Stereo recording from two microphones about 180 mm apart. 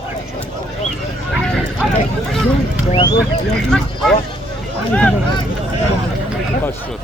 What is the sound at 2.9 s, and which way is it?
Music, 25° left (ahead or behind).